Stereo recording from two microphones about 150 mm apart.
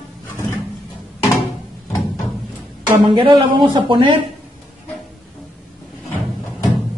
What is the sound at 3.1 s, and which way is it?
Speech, 35° right (ahead or behind).